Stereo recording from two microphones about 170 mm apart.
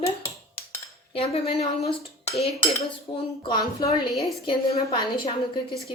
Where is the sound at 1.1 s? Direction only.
35° left (ahead or behind).